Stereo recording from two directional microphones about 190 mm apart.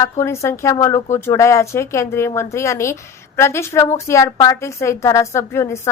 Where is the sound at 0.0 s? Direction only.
15° left (ahead or behind).